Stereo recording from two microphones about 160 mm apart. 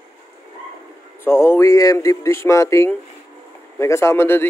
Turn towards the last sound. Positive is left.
turn(degrees=15)  # may be behind; listen again after turning